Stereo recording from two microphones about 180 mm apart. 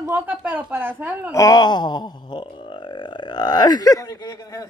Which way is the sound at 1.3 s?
20° left (ahead or behind).